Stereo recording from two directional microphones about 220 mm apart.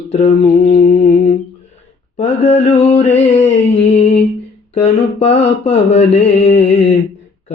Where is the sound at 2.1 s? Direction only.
30° left (ahead or behind).